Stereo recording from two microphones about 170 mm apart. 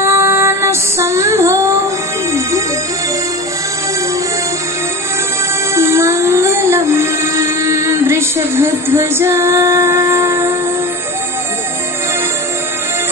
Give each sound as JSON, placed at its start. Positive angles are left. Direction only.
{"t": 0.0, "sound": "female singing", "side_deg": -15}
{"t": 5.8, "sound": "music", "side_deg": -15}